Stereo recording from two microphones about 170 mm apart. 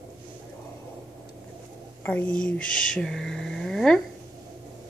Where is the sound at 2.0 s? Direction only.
10° left (ahead or behind).